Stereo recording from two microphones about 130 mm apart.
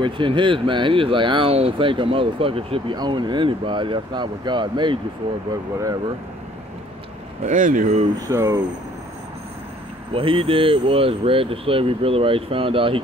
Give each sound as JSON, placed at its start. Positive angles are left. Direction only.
{"t": 0.0, "sound": "speech", "side_deg": -40}
{"t": 7.4, "sound": "speech", "side_deg": -85}
{"t": 8.2, "sound": "speech", "side_deg": -20}
{"t": 10.1, "sound": "speech", "side_deg": -45}